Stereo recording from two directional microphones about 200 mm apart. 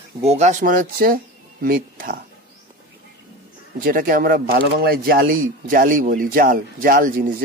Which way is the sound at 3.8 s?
45° right (ahead or behind).